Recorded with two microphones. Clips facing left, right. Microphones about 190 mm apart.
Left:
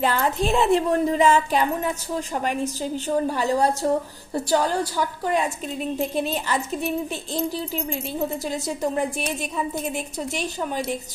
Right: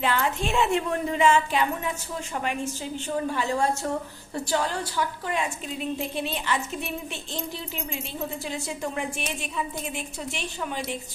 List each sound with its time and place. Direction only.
0.0 s a woman's voice: 40° left (ahead or behind)